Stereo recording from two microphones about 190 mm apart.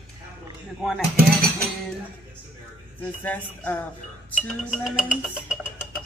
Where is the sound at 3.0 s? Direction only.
10° left (ahead or behind).